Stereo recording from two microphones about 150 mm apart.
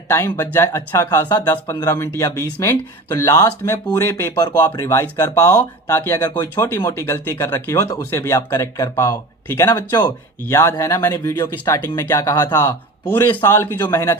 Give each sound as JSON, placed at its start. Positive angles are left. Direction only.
{"t": 0.1, "sound": "speech", "side_deg": 20}